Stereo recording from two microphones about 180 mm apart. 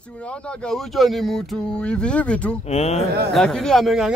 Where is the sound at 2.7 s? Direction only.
35° left (ahead or behind).